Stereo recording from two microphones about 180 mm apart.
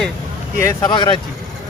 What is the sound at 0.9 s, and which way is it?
Speech, 30° left (ahead or behind).